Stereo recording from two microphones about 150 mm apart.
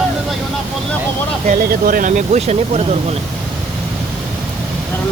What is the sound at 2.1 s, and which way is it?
Speech, 45° right (ahead or behind).